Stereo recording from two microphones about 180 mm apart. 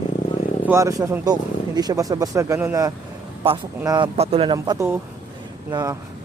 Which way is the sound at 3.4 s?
30° right (ahead or behind).